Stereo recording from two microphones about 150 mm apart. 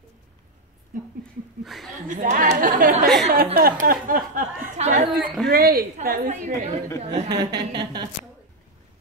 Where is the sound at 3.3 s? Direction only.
80° right; by 5.1 s 50° right (ahead or behind).